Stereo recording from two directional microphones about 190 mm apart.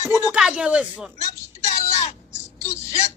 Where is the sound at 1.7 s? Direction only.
35° left (ahead or behind).